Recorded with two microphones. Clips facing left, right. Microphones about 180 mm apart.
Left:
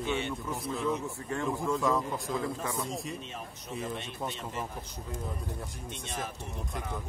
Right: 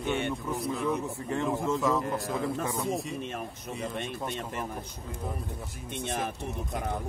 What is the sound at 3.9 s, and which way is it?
Speech, 50° right (ahead or behind).